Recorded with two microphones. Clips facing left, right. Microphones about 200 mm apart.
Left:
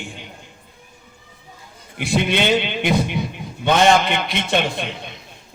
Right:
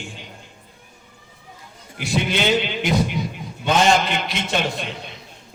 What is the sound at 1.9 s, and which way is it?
A man's voice, 55° left (ahead or behind).